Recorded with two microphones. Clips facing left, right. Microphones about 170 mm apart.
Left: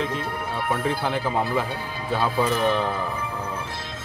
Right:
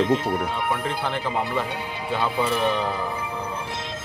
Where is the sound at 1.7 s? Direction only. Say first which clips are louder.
Even; 15° right (ahead or behind).